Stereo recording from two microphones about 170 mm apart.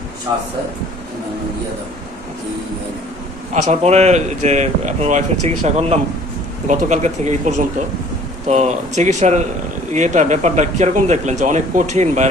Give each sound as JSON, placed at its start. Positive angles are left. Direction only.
{"t": 3.5, "sound": "speech", "side_deg": -40}